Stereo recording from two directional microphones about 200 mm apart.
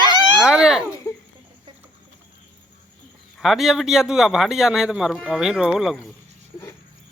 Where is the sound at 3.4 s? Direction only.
Centre (ahead or behind).